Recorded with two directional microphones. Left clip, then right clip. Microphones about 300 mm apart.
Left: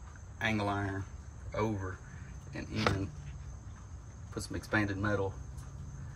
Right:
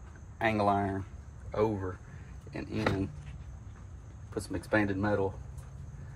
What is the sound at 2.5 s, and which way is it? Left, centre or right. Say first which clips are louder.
Speech: right 1 dB; right.